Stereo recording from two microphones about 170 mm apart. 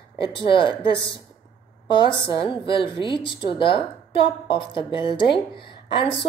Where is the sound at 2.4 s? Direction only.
30° left (ahead or behind).